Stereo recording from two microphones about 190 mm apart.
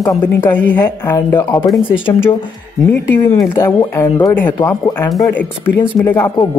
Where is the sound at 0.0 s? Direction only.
15° left (ahead or behind).